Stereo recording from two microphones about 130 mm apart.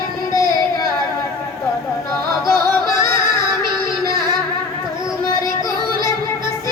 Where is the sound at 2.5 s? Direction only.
20° left (ahead or behind).